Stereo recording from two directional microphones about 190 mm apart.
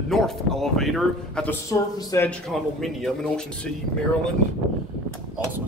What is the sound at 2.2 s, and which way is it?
Speech, 5° left (ahead or behind).